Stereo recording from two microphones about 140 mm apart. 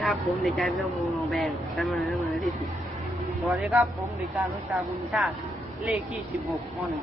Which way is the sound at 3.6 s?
10° right (ahead or behind).